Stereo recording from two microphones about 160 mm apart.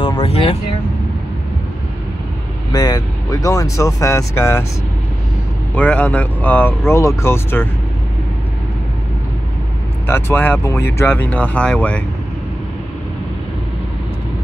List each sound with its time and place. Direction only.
0.2 s speech: 35° left (ahead or behind)
2.7 s speech: 25° left (ahead or behind)
5.8 s speech: 10° left (ahead or behind)
10.0 s speech: 15° left (ahead or behind)